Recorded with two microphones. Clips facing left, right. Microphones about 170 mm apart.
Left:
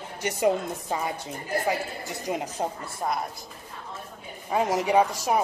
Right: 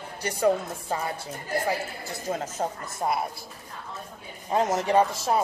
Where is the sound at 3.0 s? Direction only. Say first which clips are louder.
Right 2 dB; 5° right (ahead or behind).